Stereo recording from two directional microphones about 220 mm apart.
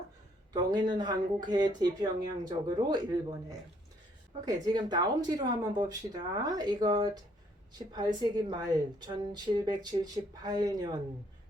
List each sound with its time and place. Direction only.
0.5 s a woman's voice: 20° right (ahead or behind)
4.4 s a woman's voice: 20° right (ahead or behind)